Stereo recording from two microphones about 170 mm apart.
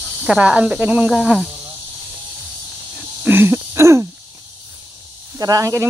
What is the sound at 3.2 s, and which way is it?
Wheeze, 10° right (ahead or behind).